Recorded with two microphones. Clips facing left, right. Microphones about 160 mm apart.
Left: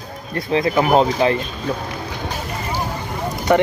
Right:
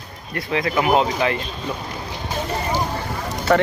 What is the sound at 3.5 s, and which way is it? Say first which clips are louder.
Speech: left 2 dB; 15° left (ahead or behind).